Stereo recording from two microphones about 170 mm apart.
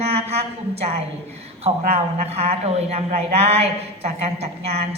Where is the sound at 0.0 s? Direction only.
40° right (ahead or behind).